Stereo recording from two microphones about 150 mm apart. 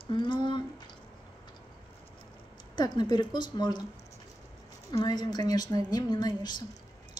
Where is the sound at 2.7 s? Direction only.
30° left (ahead or behind).